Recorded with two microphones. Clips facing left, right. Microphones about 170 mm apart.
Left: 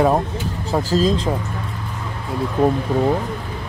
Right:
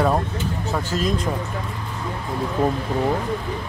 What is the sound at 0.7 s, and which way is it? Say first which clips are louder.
Speech: left 7 dB; 30° left (ahead or behind).